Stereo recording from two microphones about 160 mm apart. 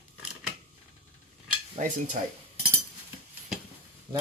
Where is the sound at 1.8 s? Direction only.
50° right (ahead or behind).